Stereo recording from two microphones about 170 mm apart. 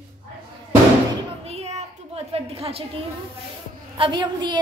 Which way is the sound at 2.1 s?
35° right (ahead or behind).